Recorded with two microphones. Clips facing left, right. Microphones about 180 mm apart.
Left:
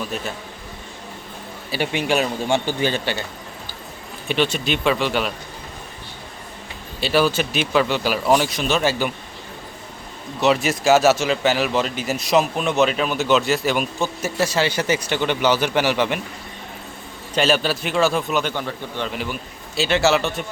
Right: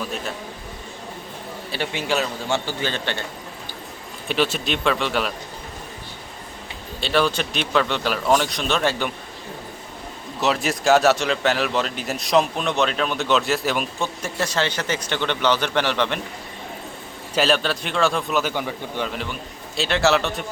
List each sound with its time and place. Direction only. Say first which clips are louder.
1.7 s a man's voice: left 3 dB; 15° left (ahead or behind)
4.3 s a man's voice: left 1 dB; centre (ahead or behind)
7.0 s a man's voice: left 2 dB; 5° left (ahead or behind)
10.4 s a man's voice: left 3 dB; centre (ahead or behind)
17.3 s a man's voice: left 1 dB; centre (ahead or behind)
18.5 s speech: right 1 dB; 10° right (ahead or behind)
19.1 s a man's voice: left 2 dB; 5° left (ahead or behind)